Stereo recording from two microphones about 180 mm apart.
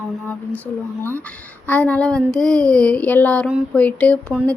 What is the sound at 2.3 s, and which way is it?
Child singing, 5° left (ahead or behind).